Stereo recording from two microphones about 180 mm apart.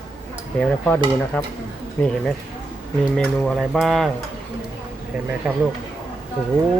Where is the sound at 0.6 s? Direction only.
5° left (ahead or behind).